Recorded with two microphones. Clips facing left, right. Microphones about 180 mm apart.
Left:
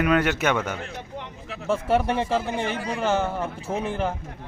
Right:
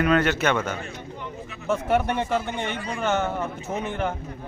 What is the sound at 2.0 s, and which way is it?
A man's voice, 30° left (ahead or behind).